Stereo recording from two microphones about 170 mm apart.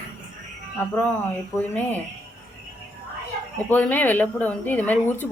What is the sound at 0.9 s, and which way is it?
Speech, 10° left (ahead or behind).